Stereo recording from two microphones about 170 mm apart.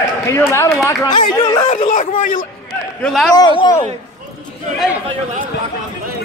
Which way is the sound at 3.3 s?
25° left (ahead or behind).